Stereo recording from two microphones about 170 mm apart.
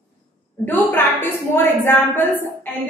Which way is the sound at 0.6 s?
10° left (ahead or behind).